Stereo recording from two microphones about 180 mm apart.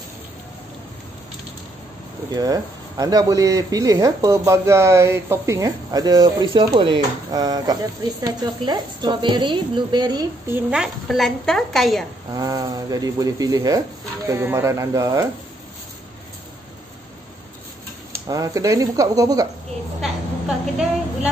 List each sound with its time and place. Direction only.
2.3 s speech: 20° right (ahead or behind)
10.5 s a woman's voice: 5° right (ahead or behind)
12.4 s speech: 20° right (ahead or behind)
18.2 s speech: 20° right (ahead or behind)
20.0 s a woman's voice: centre (ahead or behind)